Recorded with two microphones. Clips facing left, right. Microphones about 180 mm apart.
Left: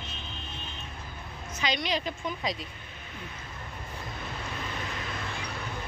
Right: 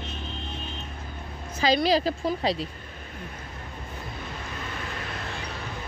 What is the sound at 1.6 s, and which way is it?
A woman's voice, 35° right (ahead or behind).